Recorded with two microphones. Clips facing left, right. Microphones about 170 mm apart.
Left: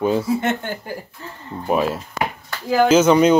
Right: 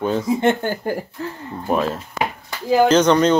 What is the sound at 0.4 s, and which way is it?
Speech, 35° right (ahead or behind).